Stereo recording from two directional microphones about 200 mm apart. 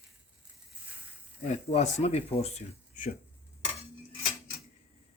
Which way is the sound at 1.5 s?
35° left (ahead or behind).